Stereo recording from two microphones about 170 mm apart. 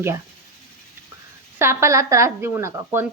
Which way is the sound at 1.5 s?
15° right (ahead or behind).